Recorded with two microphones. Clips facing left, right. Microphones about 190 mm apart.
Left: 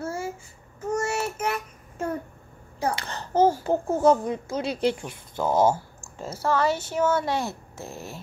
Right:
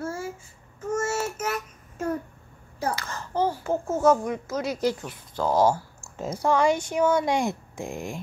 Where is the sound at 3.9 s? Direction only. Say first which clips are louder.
Even; 30° left (ahead or behind).